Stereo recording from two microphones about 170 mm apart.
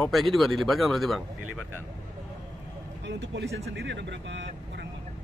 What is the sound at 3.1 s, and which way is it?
A man's voice, 90° right.